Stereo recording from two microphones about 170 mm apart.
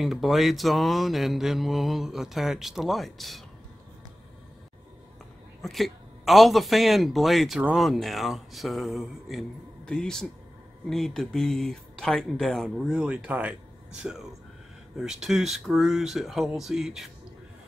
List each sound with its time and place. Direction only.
0.0 s speech: centre (ahead or behind)
5.6 s speech: centre (ahead or behind)